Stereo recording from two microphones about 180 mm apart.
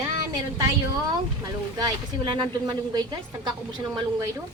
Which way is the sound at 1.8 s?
25° right (ahead or behind).